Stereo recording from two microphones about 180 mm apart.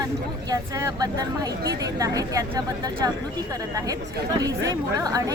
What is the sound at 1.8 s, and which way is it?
Speech, 20° right (ahead or behind).